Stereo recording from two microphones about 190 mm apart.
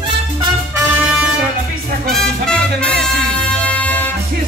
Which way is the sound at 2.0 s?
5° left (ahead or behind).